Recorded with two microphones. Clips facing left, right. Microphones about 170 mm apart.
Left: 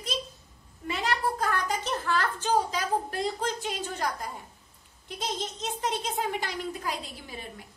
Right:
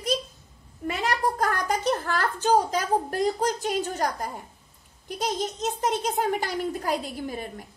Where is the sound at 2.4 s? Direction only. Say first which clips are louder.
Right 4 dB; 45° right (ahead or behind).